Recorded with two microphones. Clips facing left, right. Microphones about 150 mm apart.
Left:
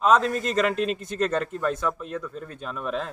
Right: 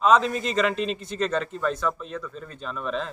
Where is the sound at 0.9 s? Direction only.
50° left (ahead or behind).